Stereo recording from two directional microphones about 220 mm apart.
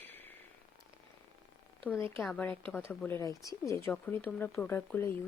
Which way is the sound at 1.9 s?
10° left (ahead or behind).